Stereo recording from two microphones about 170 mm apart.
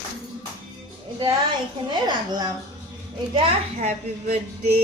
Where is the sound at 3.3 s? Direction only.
40° right (ahead or behind).